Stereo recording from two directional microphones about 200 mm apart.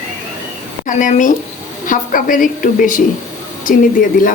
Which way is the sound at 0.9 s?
40° left (ahead or behind).